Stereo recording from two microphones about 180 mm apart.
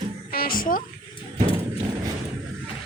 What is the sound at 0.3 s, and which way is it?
Speech, 55° left (ahead or behind).